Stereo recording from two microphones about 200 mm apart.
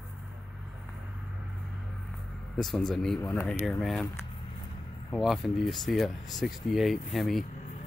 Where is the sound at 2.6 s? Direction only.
Centre (ahead or behind).